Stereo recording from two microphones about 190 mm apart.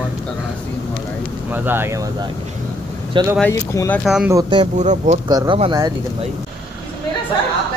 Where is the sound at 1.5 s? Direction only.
10° right (ahead or behind).